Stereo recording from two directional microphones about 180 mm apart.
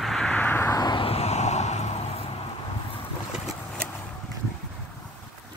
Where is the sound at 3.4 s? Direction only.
5° left (ahead or behind).